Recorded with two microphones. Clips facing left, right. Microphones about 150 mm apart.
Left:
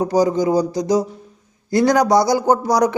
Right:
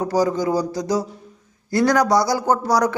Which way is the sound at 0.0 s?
20° left (ahead or behind).